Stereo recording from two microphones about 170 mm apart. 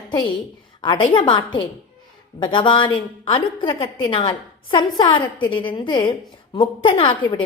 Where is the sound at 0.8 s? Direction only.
30° left (ahead or behind).